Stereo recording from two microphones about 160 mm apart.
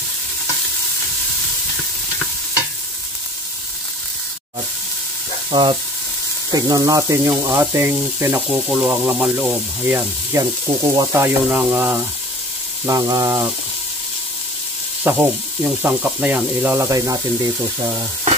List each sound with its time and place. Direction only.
5.5 s speech: 30° right (ahead or behind)
15.0 s speech: 15° right (ahead or behind)